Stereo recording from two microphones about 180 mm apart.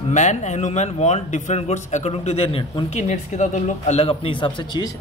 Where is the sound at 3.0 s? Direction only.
40° left (ahead or behind).